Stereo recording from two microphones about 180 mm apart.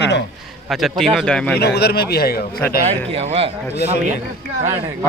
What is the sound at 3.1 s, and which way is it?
Speech, 35° right (ahead or behind).